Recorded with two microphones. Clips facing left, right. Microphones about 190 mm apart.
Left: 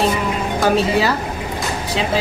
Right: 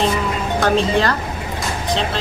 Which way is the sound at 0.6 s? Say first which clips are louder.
Even; 5° left (ahead or behind).